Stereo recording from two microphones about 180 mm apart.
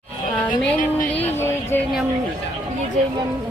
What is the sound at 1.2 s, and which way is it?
Music, 15° left (ahead or behind).